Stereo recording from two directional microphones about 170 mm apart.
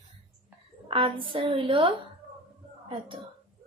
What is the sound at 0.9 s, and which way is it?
A woman's voice, 30° right (ahead or behind).